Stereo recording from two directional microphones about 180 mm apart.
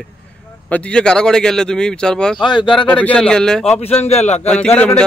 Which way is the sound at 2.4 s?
25° left (ahead or behind).